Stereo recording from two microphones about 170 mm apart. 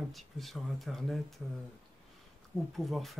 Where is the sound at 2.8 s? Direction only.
Centre (ahead or behind).